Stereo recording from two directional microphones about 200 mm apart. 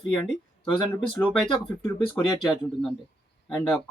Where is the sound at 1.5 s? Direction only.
25° left (ahead or behind).